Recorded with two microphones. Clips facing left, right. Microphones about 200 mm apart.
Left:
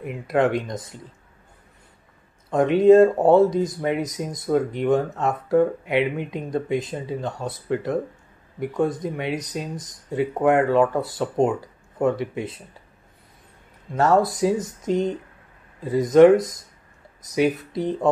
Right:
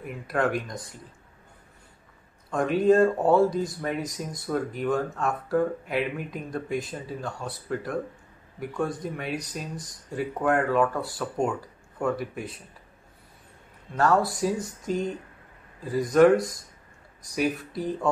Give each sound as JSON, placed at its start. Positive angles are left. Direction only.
{"t": 0.0, "sound": "speech", "side_deg": 20}
{"t": 2.5, "sound": "speech", "side_deg": 20}
{"t": 13.9, "sound": "speech", "side_deg": 20}
{"t": 17.6, "sound": "speech", "side_deg": 20}